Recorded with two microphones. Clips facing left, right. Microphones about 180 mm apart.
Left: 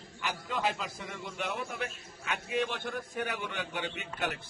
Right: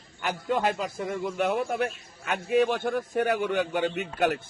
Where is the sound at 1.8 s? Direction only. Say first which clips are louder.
Right 9 dB; 65° right (ahead or behind).